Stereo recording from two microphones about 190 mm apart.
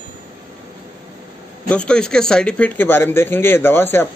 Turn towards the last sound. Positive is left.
turn(degrees=10)  # may be behind; listen again after turning